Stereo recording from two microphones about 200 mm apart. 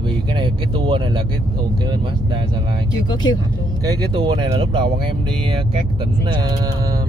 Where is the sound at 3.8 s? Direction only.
25° right (ahead or behind).